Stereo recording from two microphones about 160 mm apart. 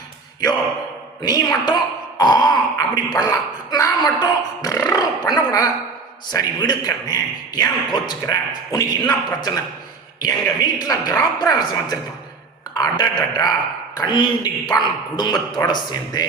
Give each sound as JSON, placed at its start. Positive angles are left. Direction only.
{"t": 1.2, "sound": "a man's voice", "side_deg": 25}